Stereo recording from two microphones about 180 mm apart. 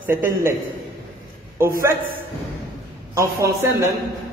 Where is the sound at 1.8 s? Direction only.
15° right (ahead or behind).